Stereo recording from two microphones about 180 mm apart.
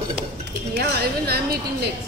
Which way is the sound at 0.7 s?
60° right (ahead or behind).